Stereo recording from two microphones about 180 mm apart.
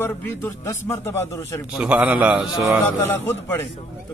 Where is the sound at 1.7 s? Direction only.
5° right (ahead or behind).